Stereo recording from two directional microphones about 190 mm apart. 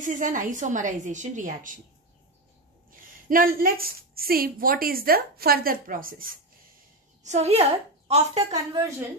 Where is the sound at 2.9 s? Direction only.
45° right (ahead or behind).